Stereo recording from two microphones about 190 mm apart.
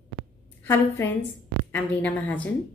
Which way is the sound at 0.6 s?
15° left (ahead or behind).